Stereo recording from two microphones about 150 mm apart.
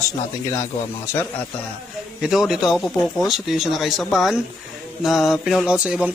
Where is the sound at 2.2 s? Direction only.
Centre (ahead or behind).